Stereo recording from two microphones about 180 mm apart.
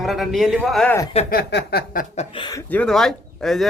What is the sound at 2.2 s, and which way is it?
Speech, 25° left (ahead or behind).